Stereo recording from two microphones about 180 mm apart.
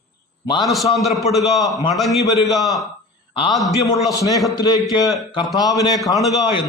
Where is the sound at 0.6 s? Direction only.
Centre (ahead or behind).